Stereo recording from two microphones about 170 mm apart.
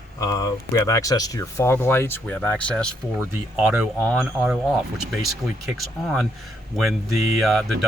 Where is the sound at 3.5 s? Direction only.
5° right (ahead or behind).